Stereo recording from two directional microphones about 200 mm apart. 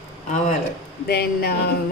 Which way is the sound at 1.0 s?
50° left (ahead or behind).